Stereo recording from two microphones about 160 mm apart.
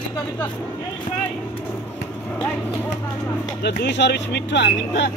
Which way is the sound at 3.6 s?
90° left.